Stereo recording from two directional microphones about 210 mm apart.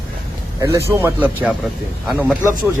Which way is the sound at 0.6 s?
15° right (ahead or behind).